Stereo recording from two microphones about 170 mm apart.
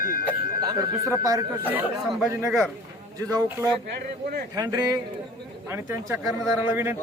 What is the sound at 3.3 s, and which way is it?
A man's voice, 20° right (ahead or behind).